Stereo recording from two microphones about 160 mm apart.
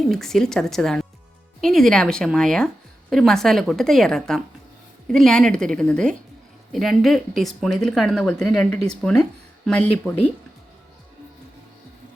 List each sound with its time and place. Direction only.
0.1 s speech: 5° left (ahead or behind)